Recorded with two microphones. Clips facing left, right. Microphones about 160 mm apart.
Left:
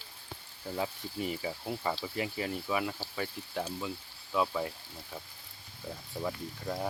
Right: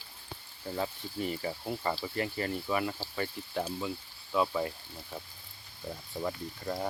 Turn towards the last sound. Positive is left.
turn(degrees=0)  # may be behind; listen again after turning